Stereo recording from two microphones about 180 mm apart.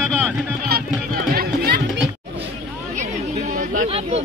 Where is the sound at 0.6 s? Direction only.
55° right (ahead or behind).